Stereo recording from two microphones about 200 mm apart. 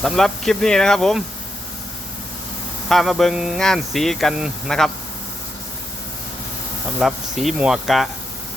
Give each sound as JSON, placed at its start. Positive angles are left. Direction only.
{"t": 0.0, "sound": "speech", "side_deg": 0}
{"t": 2.9, "sound": "speech", "side_deg": 0}
{"t": 7.0, "sound": "speech", "side_deg": 0}